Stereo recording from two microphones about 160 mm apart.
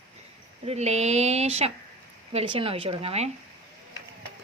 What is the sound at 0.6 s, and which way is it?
Speech, 40° right (ahead or behind).